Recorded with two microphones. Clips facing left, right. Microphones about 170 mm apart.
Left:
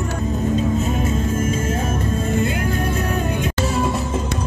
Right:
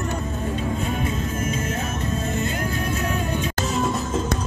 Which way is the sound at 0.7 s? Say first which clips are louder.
Left 5 dB; 45° left (ahead or behind).